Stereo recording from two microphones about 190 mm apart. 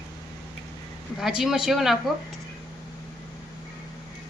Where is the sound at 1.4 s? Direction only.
5° right (ahead or behind).